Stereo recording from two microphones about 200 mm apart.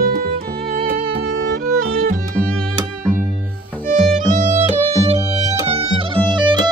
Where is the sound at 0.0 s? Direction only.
50° right (ahead or behind).